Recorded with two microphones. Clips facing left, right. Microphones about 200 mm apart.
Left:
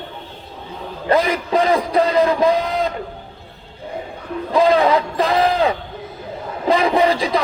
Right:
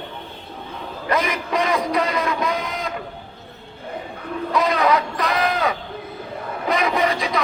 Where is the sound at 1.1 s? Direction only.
30° left (ahead or behind).